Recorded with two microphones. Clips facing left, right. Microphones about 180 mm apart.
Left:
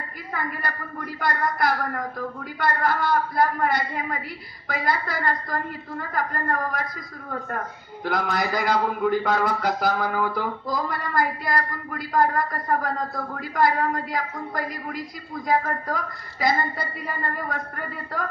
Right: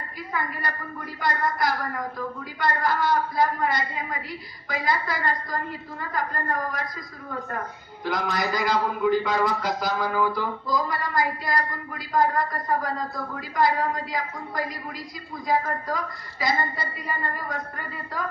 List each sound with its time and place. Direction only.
0.3 s a man's voice: 50° left (ahead or behind)
7.5 s a man's voice: 55° left (ahead or behind)